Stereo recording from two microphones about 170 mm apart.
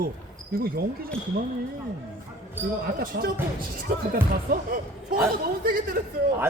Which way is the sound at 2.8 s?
60° right (ahead or behind).